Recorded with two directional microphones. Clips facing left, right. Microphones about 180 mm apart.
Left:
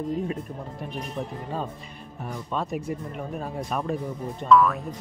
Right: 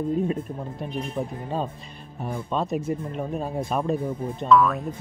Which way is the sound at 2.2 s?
25° right (ahead or behind).